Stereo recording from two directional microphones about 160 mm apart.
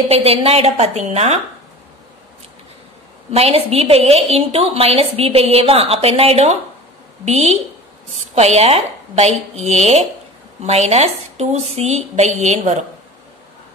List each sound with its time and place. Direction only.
0.1 s a woman's voice: 40° right (ahead or behind)
3.3 s a woman's voice: 40° right (ahead or behind)